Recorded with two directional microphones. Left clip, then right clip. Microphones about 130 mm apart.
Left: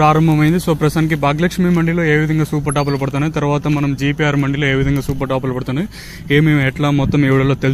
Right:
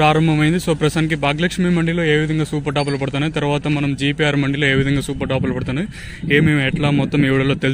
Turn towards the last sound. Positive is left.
turn(degrees=-15)  # may be behind; listen again after turning